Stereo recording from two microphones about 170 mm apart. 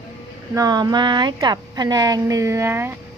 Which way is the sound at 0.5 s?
20° right (ahead or behind).